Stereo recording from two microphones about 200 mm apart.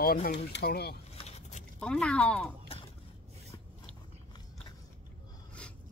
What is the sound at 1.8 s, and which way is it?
Speech, 5° left (ahead or behind).